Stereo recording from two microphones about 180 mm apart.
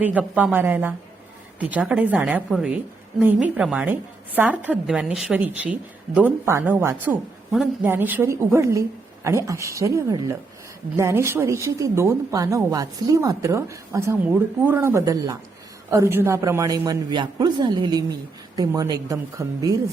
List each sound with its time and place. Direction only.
0.0 s a woman's voice: 10° right (ahead or behind)